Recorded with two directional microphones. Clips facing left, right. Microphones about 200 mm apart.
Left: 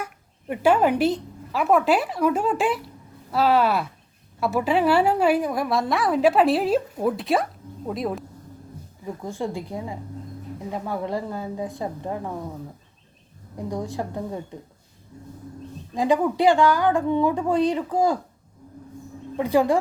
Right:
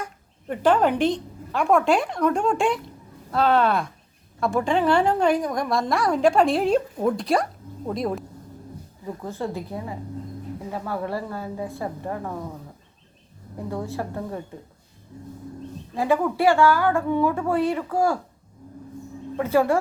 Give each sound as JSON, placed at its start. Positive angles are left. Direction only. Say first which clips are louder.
{"t": 0.0, "sound": "a woman's voice", "louder": "left 1 dB", "side_deg": 10}
{"t": 9.2, "sound": "a woman's voice", "louder": "left 1 dB", "side_deg": 15}
{"t": 13.6, "sound": "a woman's voice", "louder": "left 1 dB", "side_deg": 15}
{"t": 16.0, "sound": "a woman's voice", "louder": "left 1 dB", "side_deg": 15}
{"t": 19.4, "sound": "a woman's voice", "louder": "left 1 dB", "side_deg": 15}